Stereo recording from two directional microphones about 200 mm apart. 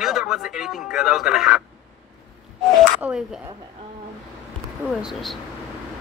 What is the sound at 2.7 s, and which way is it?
Speech, 5° right (ahead or behind).